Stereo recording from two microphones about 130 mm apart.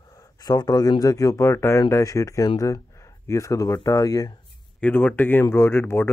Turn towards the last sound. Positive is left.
turn(degrees=20)  # may be behind; listen again after turning